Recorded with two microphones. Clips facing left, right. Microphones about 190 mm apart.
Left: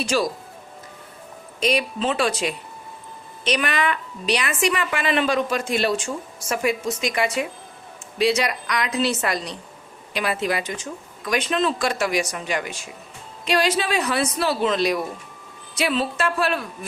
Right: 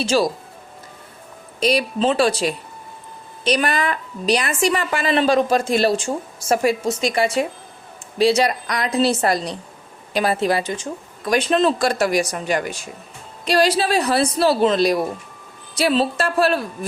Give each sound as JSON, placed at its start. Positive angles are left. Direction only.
{"t": 0.0, "sound": "speech", "side_deg": -25}
{"t": 1.5, "sound": "a woman's voice", "side_deg": -35}